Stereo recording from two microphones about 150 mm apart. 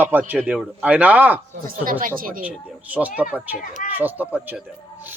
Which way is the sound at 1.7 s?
70° right (ahead or behind).